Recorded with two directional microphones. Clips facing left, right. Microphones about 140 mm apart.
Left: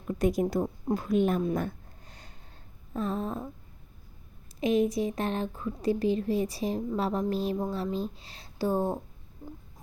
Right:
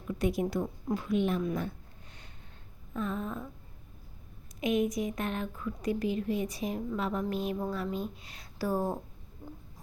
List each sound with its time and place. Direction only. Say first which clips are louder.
0.1 s a woman's voice: left 4 dB; 40° left (ahead or behind)
1.5 s a sound: left 4 dB; 45° left (ahead or behind)
2.9 s a woman's voice: left 3 dB; 35° left (ahead or behind)
4.6 s a woman's voice: left 3 dB; 30° left (ahead or behind)